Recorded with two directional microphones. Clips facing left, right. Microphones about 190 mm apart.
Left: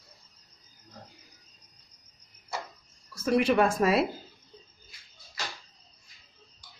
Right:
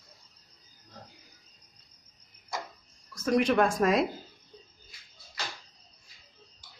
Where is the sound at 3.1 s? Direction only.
5° left (ahead or behind).